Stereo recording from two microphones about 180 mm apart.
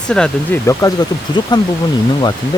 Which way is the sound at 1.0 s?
20° left (ahead or behind).